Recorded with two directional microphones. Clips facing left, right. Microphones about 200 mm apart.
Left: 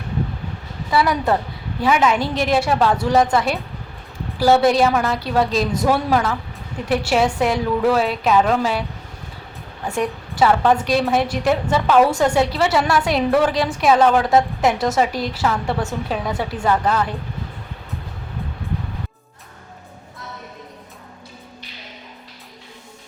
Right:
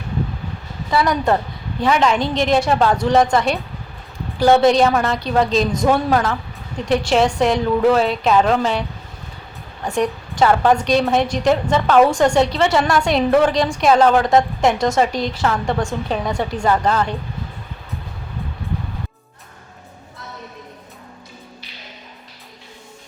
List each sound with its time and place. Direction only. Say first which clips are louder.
0.9 s a woman's voice: right 1 dB; 5° left (ahead or behind)
10.0 s a woman's voice: right 1 dB; 5° left (ahead or behind)